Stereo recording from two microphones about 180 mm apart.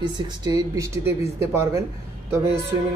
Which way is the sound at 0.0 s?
20° right (ahead or behind).